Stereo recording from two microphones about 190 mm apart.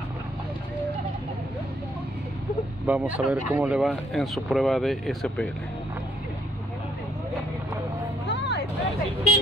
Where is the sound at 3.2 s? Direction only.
5° right (ahead or behind).